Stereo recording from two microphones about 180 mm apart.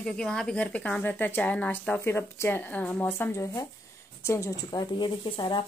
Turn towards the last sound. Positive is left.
turn(degrees=25)  # may be behind; listen again after turning